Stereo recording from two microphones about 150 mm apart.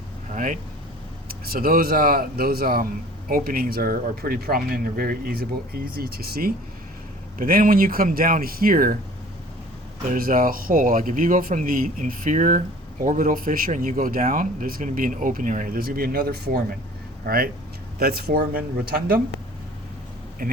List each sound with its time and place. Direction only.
0.3 s speech: 60° right (ahead or behind)
1.3 s speech: 75° right (ahead or behind)
3.2 s speech: 75° right (ahead or behind); by 6.5 s 90° right
7.3 s speech: 70° right (ahead or behind)
10.1 s speech: 70° right (ahead or behind); by 19.2 s 85° right
20.4 s speech: 75° right (ahead or behind)